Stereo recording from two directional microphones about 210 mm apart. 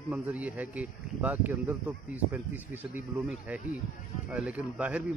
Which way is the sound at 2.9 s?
5° right (ahead or behind).